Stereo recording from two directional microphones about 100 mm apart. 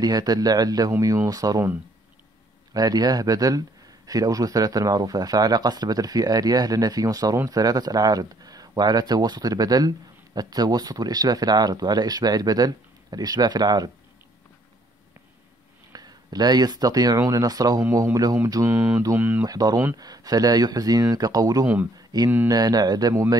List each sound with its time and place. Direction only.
0.0 s speech: 40° right (ahead or behind)
2.7 s speech: 40° right (ahead or behind)
15.9 s speech: 40° right (ahead or behind)
18.7 s mantra: 20° right (ahead or behind)
19.4 s speech: 40° right (ahead or behind)